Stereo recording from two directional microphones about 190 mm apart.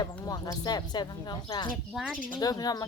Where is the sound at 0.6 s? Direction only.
20° left (ahead or behind).